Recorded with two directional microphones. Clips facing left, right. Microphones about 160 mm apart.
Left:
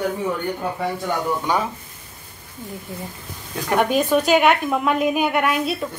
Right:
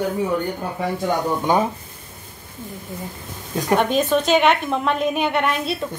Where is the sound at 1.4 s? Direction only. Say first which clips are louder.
Right 3 dB; 20° right (ahead or behind).